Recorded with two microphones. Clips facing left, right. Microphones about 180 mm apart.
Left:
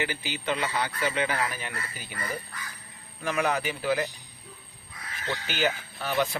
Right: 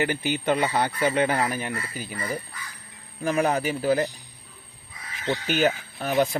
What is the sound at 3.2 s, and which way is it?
Speech, 35° right (ahead or behind).